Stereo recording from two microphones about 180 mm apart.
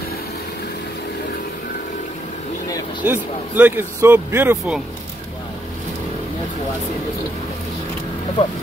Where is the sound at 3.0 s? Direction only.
10° right (ahead or behind).